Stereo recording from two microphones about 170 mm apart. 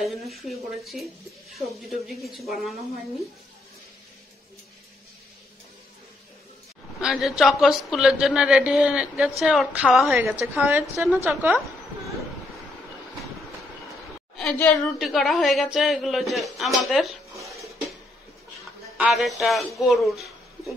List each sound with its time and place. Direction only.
0.0 s a woman's voice: centre (ahead or behind)
7.0 s a woman's voice: 5° right (ahead or behind)
14.3 s a woman's voice: 5° left (ahead or behind)
17.5 s a sound: centre (ahead or behind)
18.9 s speech: centre (ahead or behind)